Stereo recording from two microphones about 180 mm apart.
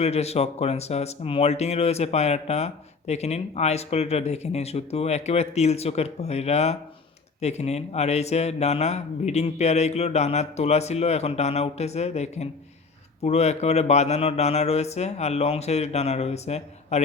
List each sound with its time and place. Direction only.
0.0 s speech: 35° left (ahead or behind)